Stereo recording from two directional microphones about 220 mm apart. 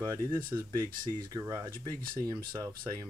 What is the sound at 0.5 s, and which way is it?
Speech, 20° right (ahead or behind).